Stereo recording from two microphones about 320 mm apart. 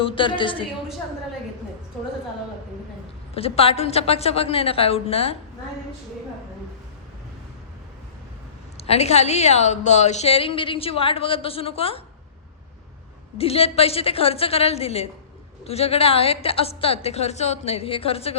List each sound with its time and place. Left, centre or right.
0.0 s a woman's voice: centre
3.3 s a woman's voice: centre
8.8 s a woman's voice: centre
13.4 s a woman's voice: centre